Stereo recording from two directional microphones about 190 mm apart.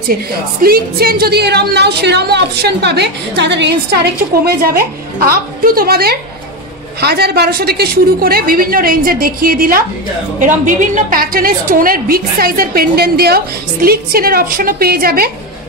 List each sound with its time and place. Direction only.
0.1 s a woman's voice: 55° right (ahead or behind)